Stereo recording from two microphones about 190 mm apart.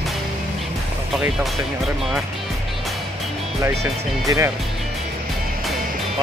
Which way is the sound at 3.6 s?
15° right (ahead or behind).